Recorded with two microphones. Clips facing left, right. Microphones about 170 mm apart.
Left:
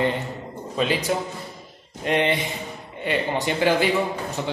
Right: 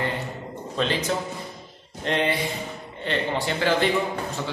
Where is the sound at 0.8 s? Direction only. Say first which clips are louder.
Left 2 dB; 10° left (ahead or behind).